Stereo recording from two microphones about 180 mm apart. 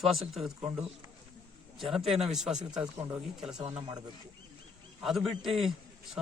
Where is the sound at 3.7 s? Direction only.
30° right (ahead or behind).